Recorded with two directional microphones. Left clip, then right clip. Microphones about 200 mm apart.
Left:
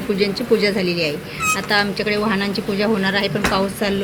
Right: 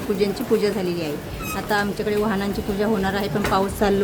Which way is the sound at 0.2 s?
15° right (ahead or behind).